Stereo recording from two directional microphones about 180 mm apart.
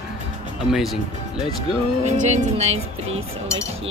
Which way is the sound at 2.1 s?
40° right (ahead or behind).